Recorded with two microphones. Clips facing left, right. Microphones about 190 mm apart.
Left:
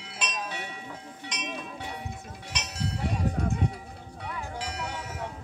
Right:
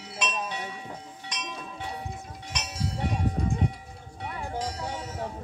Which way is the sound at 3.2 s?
70° left (ahead or behind).